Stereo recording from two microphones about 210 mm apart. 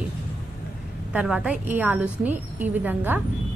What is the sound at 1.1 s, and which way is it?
Speech, 5° right (ahead or behind).